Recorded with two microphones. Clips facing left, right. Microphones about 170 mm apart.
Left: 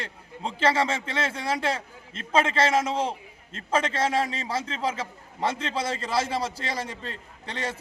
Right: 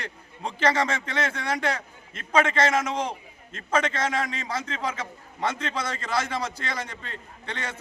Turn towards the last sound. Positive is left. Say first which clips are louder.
# left 2 dB
turn(degrees=35)  # may be behind; listen again after turning